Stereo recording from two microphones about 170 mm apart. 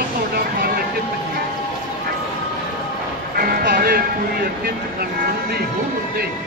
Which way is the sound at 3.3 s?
60° right (ahead or behind).